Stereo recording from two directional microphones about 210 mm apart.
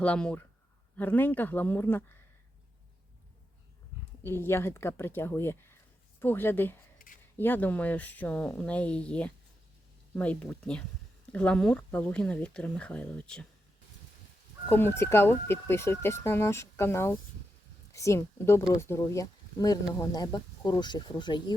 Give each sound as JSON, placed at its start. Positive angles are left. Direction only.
{"t": 0.0, "sound": "speech", "side_deg": 5}
{"t": 4.2, "sound": "speech", "side_deg": 10}
{"t": 7.0, "sound": "scissors", "side_deg": 45}
{"t": 7.3, "sound": "speech", "side_deg": 10}
{"t": 14.7, "sound": "speech", "side_deg": 10}